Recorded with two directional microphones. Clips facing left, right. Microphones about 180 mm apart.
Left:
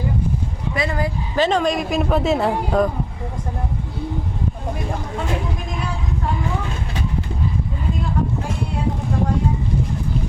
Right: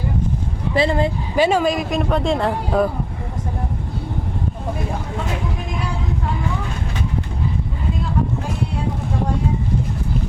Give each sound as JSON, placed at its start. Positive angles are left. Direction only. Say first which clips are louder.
{"t": 0.7, "sound": "speech", "louder": "right 5 dB", "side_deg": -30}
{"t": 1.4, "sound": "speech", "louder": "right 1 dB", "side_deg": -10}